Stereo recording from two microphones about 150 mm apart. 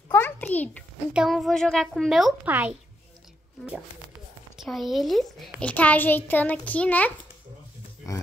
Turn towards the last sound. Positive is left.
turn(degrees=10)  # may be behind; listen again after turning